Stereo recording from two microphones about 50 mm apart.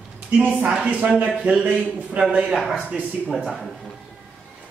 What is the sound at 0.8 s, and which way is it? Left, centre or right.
A man's voice, right.